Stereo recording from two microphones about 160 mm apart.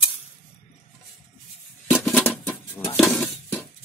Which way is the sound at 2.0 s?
5° left (ahead or behind).